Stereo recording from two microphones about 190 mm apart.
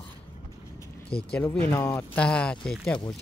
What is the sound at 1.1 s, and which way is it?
Speech, 55° left (ahead or behind).